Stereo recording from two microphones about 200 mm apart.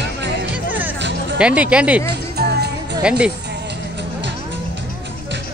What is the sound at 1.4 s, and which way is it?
Speech, 5° right (ahead or behind).